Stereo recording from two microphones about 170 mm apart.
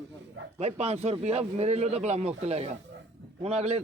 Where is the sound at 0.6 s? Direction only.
40° right (ahead or behind).